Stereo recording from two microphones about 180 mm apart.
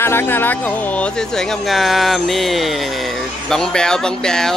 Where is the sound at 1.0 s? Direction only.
Centre (ahead or behind).